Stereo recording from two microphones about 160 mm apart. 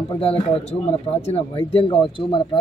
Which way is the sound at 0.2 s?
35° left (ahead or behind).